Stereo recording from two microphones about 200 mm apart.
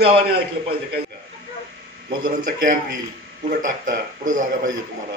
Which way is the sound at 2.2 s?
45° right (ahead or behind).